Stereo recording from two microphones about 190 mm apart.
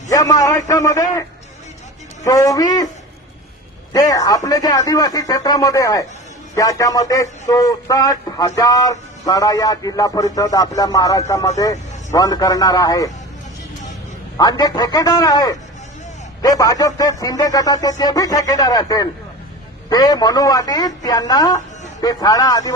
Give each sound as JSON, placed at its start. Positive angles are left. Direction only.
{"t": 0.1, "sound": "a man's voice", "side_deg": 20}
{"t": 2.2, "sound": "speech", "side_deg": 20}
{"t": 3.9, "sound": "speech", "side_deg": 20}
{"t": 14.3, "sound": "speech", "side_deg": 20}